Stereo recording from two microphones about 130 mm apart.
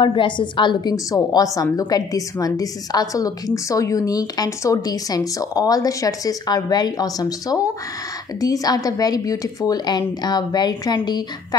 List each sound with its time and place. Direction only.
0.0 s a woman's voice: 40° left (ahead or behind)